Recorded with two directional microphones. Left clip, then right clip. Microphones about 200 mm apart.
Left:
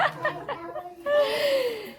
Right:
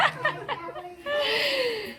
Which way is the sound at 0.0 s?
15° left (ahead or behind).